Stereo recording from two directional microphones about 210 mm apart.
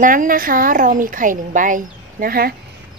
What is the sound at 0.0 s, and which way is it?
A woman's voice, 40° right (ahead or behind).